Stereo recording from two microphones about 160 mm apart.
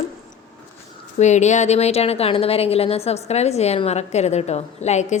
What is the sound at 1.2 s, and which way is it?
A woman's voice, 45° left (ahead or behind).